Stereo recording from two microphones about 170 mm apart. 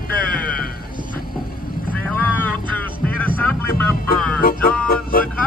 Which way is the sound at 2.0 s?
10° left (ahead or behind).